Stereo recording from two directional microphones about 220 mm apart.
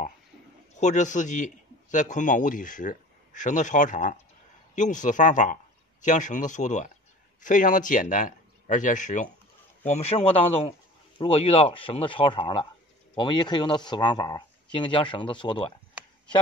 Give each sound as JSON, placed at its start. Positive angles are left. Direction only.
{"t": 0.7, "sound": "a man's voice", "side_deg": 35}